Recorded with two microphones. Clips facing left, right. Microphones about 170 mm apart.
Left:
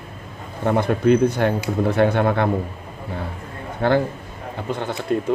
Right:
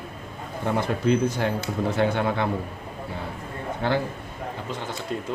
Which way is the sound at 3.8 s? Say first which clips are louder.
Left 7 dB; 60° left (ahead or behind).